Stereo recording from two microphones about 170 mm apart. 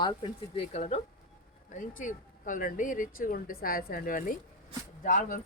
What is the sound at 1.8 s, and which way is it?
A woman's voice, 50° left (ahead or behind).